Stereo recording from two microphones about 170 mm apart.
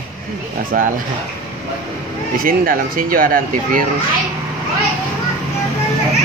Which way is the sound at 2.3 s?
60° right (ahead or behind).